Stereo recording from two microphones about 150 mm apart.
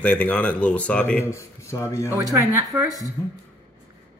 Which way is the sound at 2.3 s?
20° right (ahead or behind).